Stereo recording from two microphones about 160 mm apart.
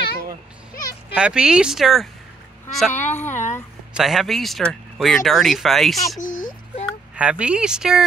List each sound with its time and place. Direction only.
1.1 s speech: 5° right (ahead or behind)
2.9 s speech: 50° left (ahead or behind)
3.2 s a sound: 15° left (ahead or behind)
3.9 s speech: centre (ahead or behind)
6.1 s a sound: 55° left (ahead or behind)
7.2 s speech: 5° right (ahead or behind)